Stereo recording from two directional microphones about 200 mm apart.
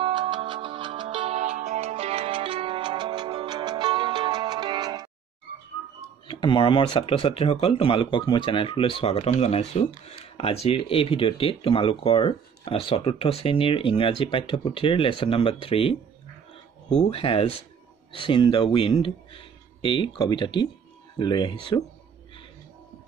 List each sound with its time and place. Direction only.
0.0 s music: 25° right (ahead or behind)
6.2 s speech: 25° left (ahead or behind)